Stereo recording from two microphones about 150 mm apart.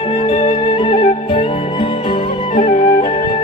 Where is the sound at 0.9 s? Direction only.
40° left (ahead or behind).